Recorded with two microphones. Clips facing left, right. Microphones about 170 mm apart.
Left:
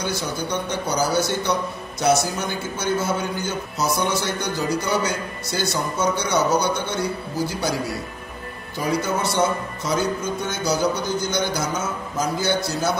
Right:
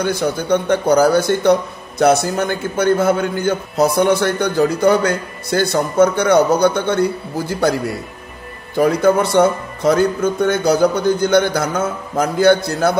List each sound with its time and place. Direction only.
0.0 s speech: 55° right (ahead or behind)